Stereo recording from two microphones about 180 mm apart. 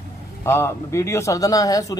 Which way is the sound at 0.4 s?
15° left (ahead or behind).